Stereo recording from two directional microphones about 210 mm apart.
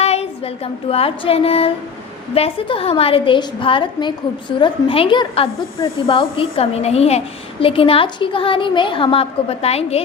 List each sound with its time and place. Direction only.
0.0 s child singing: 30° left (ahead or behind)
2.3 s a woman's voice: 25° left (ahead or behind)